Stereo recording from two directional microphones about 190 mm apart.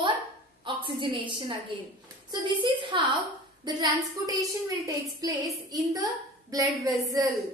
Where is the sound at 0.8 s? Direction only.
25° right (ahead or behind).